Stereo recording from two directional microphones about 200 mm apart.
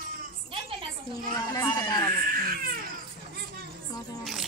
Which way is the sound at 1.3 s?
15° left (ahead or behind).